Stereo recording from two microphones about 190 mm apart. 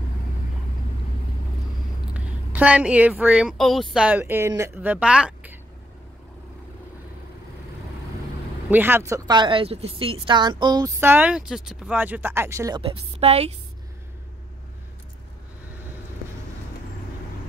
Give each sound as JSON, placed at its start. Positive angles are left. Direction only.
{"t": 2.1, "sound": "speech", "side_deg": -5}
{"t": 8.6, "sound": "speech", "side_deg": -10}